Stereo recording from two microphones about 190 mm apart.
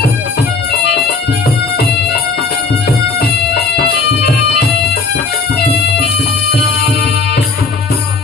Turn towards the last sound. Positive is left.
turn(degrees=60)  # may be behind; listen again after turning